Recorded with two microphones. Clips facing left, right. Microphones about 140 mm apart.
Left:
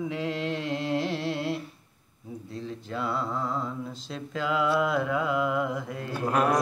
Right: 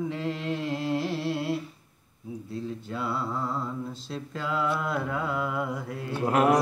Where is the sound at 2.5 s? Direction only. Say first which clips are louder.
Even; 5° right (ahead or behind).